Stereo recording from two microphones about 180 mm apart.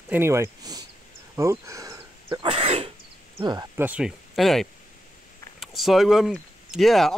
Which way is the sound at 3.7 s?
10° right (ahead or behind).